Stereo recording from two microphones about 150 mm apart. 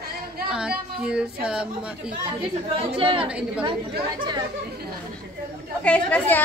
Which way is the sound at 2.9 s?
35° right (ahead or behind).